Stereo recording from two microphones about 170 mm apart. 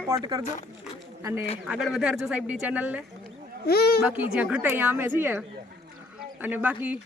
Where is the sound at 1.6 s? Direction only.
5° right (ahead or behind).